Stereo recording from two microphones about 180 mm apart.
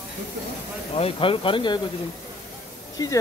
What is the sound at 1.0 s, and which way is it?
Speech, 30° left (ahead or behind).